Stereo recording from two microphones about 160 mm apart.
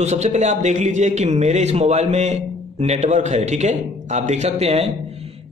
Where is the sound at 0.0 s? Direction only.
45° right (ahead or behind).